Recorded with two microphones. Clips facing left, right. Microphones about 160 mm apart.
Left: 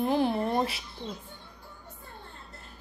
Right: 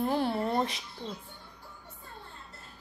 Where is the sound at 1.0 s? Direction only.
25° left (ahead or behind).